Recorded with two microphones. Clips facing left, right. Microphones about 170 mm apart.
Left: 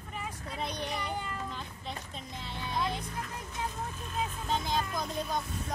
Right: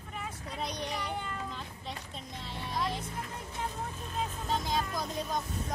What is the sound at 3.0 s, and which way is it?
Vehicle, 25° right (ahead or behind).